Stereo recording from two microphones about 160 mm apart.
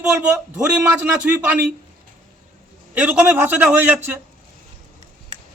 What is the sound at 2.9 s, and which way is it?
A man's voice, 10° right (ahead or behind).